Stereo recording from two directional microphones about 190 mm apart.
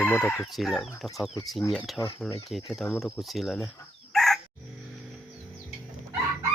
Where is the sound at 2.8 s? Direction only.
10° left (ahead or behind).